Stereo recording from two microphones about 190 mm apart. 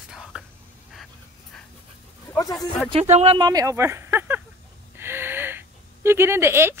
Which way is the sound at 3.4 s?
20° right (ahead or behind).